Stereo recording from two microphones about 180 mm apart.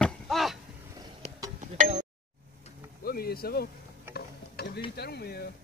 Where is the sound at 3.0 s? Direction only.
55° left (ahead or behind).